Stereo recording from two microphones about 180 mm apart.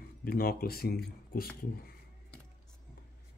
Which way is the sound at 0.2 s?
55° left (ahead or behind).